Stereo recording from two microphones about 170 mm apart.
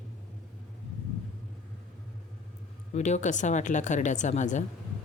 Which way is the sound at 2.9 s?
45° left (ahead or behind).